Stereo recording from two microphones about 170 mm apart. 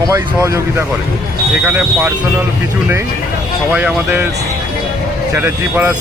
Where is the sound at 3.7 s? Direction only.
10° right (ahead or behind).